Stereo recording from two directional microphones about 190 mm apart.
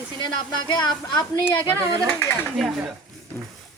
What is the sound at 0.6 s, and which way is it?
Speech, 20° left (ahead or behind).